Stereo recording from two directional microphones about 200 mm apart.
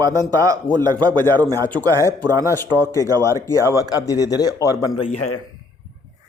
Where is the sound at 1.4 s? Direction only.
20° right (ahead or behind).